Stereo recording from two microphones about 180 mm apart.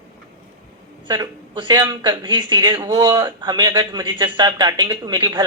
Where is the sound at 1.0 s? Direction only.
25° right (ahead or behind).